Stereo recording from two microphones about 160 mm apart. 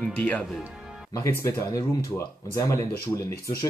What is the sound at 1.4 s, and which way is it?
Speech, 20° left (ahead or behind).